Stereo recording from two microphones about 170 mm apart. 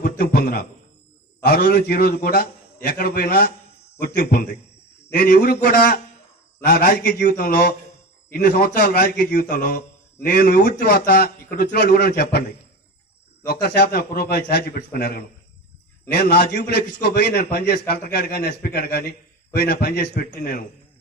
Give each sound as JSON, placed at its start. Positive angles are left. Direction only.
{"t": 0.0, "sound": "a sound", "side_deg": 65}
{"t": 1.5, "sound": "a man's voice", "side_deg": 70}
{"t": 13.5, "sound": "a man's voice", "side_deg": 75}
{"t": 13.8, "sound": "a man's voice", "side_deg": 65}